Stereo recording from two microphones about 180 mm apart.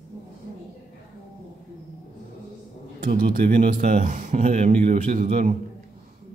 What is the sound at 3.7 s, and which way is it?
Speech, 40° right (ahead or behind).